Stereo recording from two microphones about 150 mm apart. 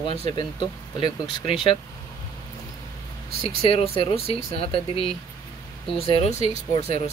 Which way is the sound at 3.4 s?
40° left (ahead or behind).